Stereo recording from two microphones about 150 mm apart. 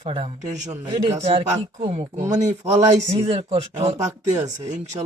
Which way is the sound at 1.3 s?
40° right (ahead or behind).